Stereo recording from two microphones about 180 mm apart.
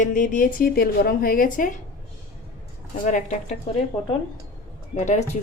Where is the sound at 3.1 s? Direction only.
40° left (ahead or behind).